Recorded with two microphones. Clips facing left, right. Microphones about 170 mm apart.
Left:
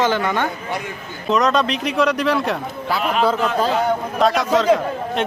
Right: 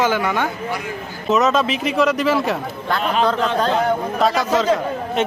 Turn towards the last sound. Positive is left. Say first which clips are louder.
# right 1 dB
turn(degrees=0)  # may be behind; listen again after turning